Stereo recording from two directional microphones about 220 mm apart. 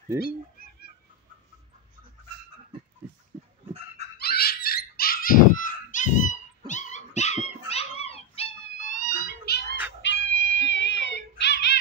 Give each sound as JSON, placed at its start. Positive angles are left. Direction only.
{"t": 4.2, "sound": "dog", "side_deg": 45}
{"t": 10.0, "sound": "cat", "side_deg": 55}